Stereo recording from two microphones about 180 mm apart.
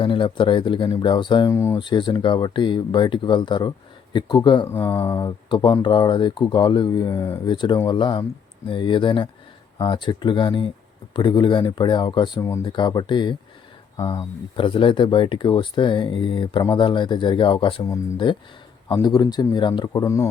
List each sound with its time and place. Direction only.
0.0 s speech: 30° left (ahead or behind)
4.6 s speech: 15° left (ahead or behind)